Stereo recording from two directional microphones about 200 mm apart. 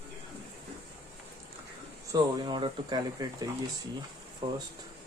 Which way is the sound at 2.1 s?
25° right (ahead or behind).